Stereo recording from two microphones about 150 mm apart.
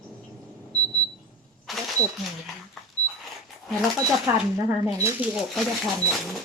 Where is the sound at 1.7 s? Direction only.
Centre (ahead or behind).